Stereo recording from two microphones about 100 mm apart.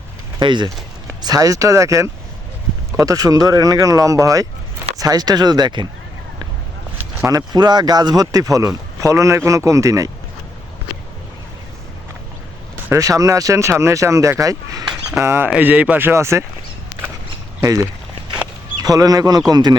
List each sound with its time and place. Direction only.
0.3 s speech: 50° right (ahead or behind)
1.2 s speech: 40° right (ahead or behind)
7.3 s speech: 40° right (ahead or behind)
12.9 s speech: 35° right (ahead or behind)
15.4 s speech: 15° right (ahead or behind)
17.6 s speech: 30° right (ahead or behind)